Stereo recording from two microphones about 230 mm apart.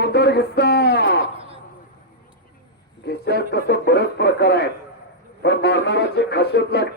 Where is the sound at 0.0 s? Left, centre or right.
Left.